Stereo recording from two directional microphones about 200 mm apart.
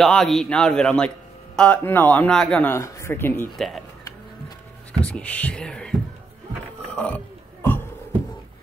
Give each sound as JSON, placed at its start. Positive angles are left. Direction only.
{"t": 0.0, "sound": "a man's voice", "side_deg": 0}
{"t": 5.0, "sound": "a man's voice", "side_deg": 5}
{"t": 6.9, "sound": "a sound", "side_deg": 5}